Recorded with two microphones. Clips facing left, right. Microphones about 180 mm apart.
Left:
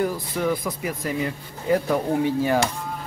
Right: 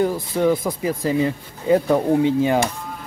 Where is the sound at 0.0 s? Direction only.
25° right (ahead or behind).